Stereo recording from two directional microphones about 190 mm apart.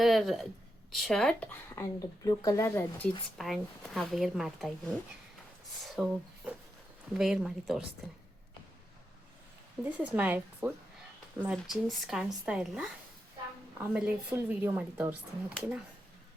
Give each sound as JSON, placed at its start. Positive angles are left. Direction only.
{"t": 0.0, "sound": "a woman's voice", "side_deg": 0}
{"t": 1.7, "sound": "speech", "side_deg": 15}
{"t": 3.3, "sound": "a woman's voice", "side_deg": 0}
{"t": 5.8, "sound": "a woman's voice", "side_deg": 0}
{"t": 9.8, "sound": "a woman's voice", "side_deg": -10}